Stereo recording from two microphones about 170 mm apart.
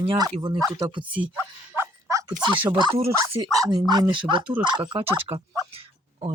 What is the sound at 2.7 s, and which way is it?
Speech, 25° right (ahead or behind).